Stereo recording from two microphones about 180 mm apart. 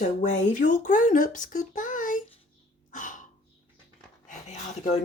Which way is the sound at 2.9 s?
45° left (ahead or behind).